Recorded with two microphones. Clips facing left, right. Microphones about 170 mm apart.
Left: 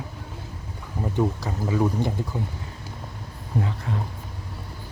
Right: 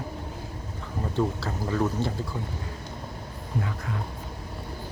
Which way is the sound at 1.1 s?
15° left (ahead or behind).